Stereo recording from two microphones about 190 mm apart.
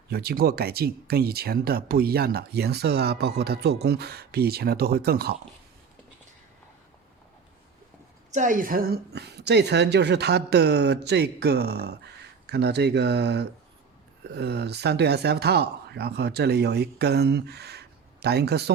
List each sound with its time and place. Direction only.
0.1 s a woman's voice: 55° right (ahead or behind)
8.3 s a woman's voice: 40° right (ahead or behind); by 18.7 s 60° right (ahead or behind)